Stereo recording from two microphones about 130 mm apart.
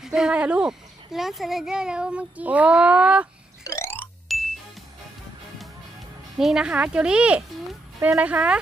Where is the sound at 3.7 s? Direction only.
20° left (ahead or behind).